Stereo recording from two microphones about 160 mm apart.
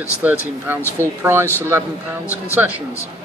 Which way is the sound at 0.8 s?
15° left (ahead or behind).